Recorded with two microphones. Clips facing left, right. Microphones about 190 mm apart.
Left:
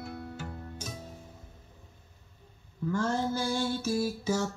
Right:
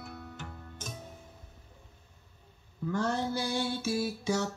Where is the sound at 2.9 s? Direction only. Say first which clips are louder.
Left 1 dB; 65° right (ahead or behind).